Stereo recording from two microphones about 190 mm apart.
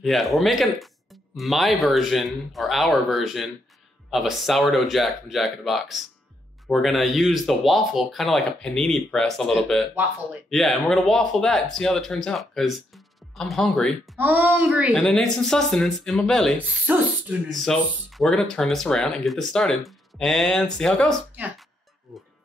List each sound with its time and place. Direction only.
0.0 s speech: centre (ahead or behind)
14.1 s speech: 10° right (ahead or behind)
15.0 s speech: 5° left (ahead or behind)
16.8 s speech: 10° right (ahead or behind)
17.5 s speech: centre (ahead or behind)